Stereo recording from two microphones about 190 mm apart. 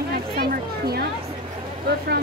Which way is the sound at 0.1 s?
55° right (ahead or behind).